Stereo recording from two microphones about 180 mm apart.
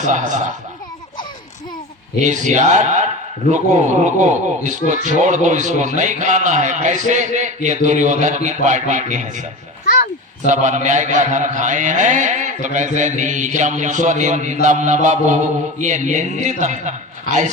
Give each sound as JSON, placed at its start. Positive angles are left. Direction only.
{"t": 0.0, "sound": "a man's voice", "side_deg": -45}
{"t": 2.2, "sound": "a man's voice", "side_deg": -40}
{"t": 9.8, "sound": "a sound", "side_deg": 45}
{"t": 10.4, "sound": "a man's voice", "side_deg": -45}